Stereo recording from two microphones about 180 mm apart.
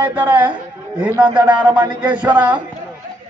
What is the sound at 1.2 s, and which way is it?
A man's voice, 25° right (ahead or behind).